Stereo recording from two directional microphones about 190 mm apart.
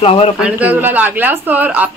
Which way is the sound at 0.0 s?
30° left (ahead or behind).